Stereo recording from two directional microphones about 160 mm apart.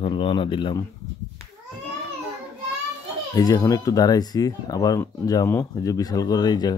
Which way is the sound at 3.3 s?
20° left (ahead or behind).